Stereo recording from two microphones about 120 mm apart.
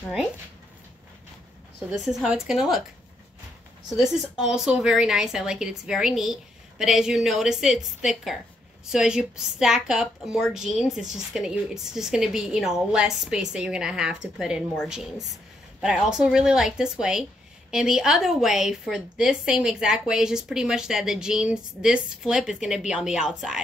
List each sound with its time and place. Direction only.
1.9 s speech: 5° right (ahead or behind)
3.9 s speech: 5° right (ahead or behind)
15.8 s speech: 5° right (ahead or behind)